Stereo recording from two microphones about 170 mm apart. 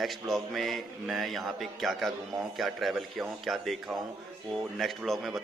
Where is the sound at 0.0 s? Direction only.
Centre (ahead or behind).